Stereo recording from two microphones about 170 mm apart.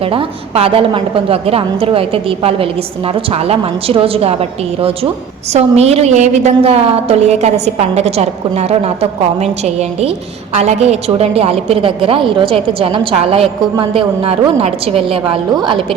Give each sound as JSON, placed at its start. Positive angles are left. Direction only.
{"t": 0.0, "sound": "a woman's voice", "side_deg": -35}